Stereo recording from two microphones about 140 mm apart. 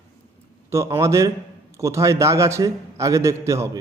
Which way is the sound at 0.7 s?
20° right (ahead or behind).